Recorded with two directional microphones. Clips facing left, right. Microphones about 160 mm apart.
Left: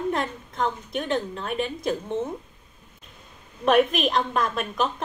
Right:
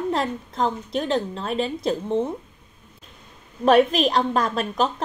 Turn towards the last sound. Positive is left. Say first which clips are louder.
# right 3 dB
turn(degrees=-35)  # may be behind; listen again after turning